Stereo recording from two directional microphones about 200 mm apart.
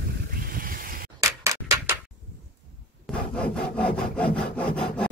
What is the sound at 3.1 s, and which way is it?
Wood, 5° left (ahead or behind).